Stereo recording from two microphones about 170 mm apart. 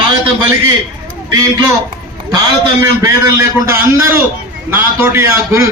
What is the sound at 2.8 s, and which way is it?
A man's voice, 15° right (ahead or behind).